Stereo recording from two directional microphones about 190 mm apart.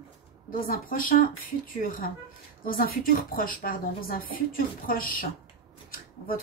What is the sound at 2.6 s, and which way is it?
Speech, 50° left (ahead or behind).